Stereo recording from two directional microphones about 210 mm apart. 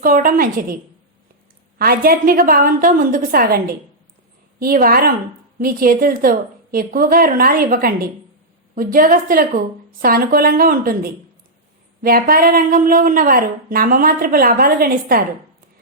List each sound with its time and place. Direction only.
0.0 s a woman's voice: 40° right (ahead or behind)
1.8 s a woman's voice: 45° right (ahead or behind)
4.6 s a woman's voice: 45° right (ahead or behind)